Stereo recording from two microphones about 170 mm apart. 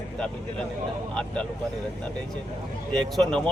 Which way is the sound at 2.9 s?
5° left (ahead or behind).